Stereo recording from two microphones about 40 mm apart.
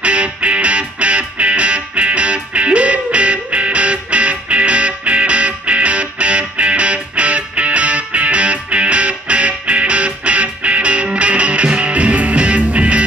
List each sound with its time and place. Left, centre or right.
0.0 s music: right